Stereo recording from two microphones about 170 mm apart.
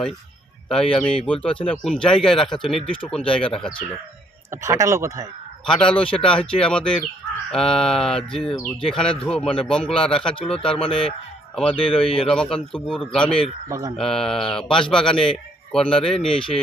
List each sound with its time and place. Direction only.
0.7 s a man's voice: 5° left (ahead or behind)
4.5 s speech: 15° right (ahead or behind)
5.6 s a man's voice: 5° left (ahead or behind)
13.7 s speech: 15° right (ahead or behind)
13.9 s a man's voice: 5° left (ahead or behind)